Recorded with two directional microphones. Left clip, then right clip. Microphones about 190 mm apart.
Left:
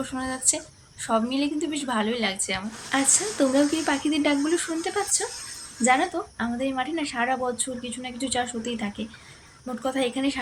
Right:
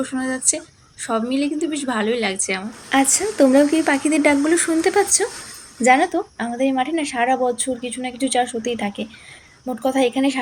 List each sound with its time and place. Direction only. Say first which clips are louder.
0.0 s a woman's voice: right 5 dB; 10° right (ahead or behind)
2.9 s a woman's voice: right 6 dB; 35° right (ahead or behind)